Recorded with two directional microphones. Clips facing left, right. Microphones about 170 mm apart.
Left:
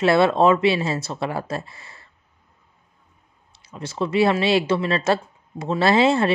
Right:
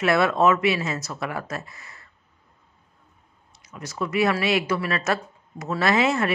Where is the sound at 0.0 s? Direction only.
30° left (ahead or behind).